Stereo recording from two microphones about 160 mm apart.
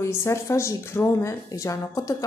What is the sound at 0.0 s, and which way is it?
Speech, 20° left (ahead or behind).